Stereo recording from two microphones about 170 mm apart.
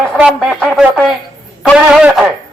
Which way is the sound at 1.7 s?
5° right (ahead or behind).